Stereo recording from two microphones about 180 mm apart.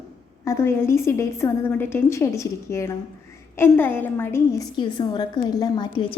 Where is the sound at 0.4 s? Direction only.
15° left (ahead or behind).